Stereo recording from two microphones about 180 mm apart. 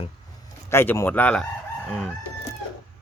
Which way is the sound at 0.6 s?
15° left (ahead or behind).